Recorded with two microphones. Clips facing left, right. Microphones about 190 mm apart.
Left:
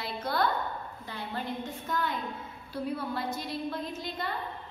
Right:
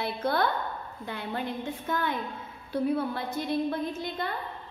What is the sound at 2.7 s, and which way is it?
A woman's voice, 55° right (ahead or behind).